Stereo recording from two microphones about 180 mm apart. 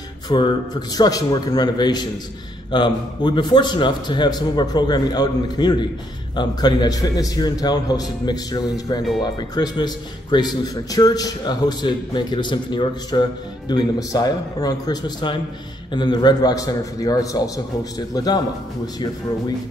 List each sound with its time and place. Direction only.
0.3 s a man's voice: 25° left (ahead or behind)